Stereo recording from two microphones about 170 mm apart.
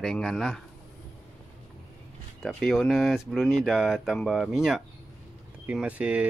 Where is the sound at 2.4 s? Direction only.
Centre (ahead or behind).